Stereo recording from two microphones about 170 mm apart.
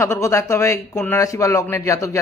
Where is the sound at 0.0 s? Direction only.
15° left (ahead or behind).